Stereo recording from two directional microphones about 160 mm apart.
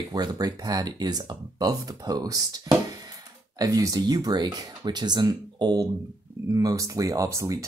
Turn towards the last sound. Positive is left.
turn(degrees=-20)  # may be behind; listen again after turning